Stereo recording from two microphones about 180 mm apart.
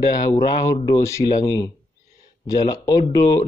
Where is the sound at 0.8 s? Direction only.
15° left (ahead or behind).